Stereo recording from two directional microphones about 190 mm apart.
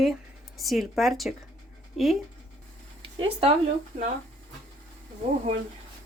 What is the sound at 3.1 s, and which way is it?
Speech, 30° right (ahead or behind).